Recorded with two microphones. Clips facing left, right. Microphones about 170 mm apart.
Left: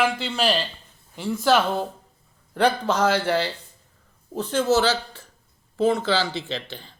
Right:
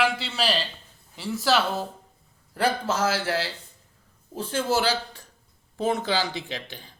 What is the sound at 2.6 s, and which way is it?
A man's voice, 5° right (ahead or behind).